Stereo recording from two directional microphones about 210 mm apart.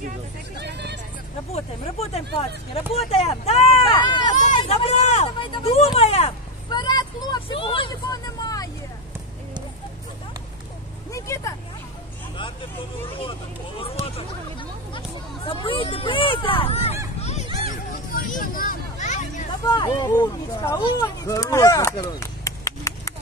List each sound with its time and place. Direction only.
0.6 s speech: 55° right (ahead or behind)
1.5 s speech: 30° left (ahead or behind)
4.4 s speech: 35° left (ahead or behind)
5.9 s vehicle: 30° left (ahead or behind)
11.1 s vehicle: 15° left (ahead or behind)
13.7 s speech: 25° left (ahead or behind)
17.2 s music: 30° left (ahead or behind)
18.1 s a sound: 40° left (ahead or behind)
19.7 s speech: 20° left (ahead or behind)